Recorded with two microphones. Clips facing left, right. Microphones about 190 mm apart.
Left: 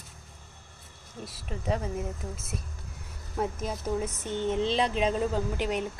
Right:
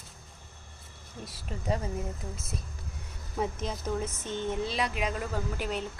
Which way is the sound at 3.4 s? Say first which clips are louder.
Left 1 dB; 5° left (ahead or behind).